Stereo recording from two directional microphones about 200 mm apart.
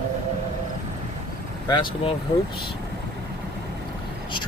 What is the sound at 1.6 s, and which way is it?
Speech, 20° left (ahead or behind).